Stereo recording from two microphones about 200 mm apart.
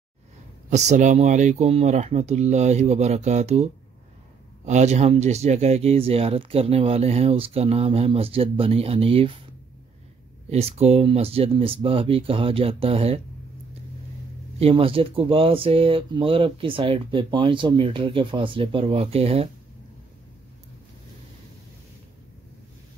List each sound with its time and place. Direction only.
0.7 s speech: 35° right (ahead or behind)
10.5 s speech: 30° right (ahead or behind)
14.6 s speech: 30° right (ahead or behind)